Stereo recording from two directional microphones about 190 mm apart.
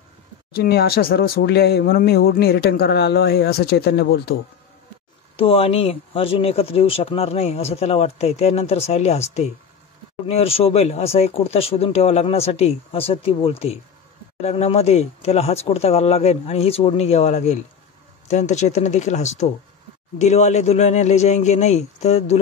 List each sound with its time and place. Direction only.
0.6 s speech: 55° left (ahead or behind)
5.3 s speech: 30° left (ahead or behind)
10.2 s speech: 30° left (ahead or behind)